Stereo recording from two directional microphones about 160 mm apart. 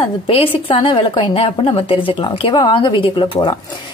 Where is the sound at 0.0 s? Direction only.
35° left (ahead or behind).